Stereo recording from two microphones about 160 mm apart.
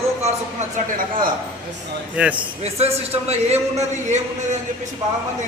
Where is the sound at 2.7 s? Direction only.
40° right (ahead or behind).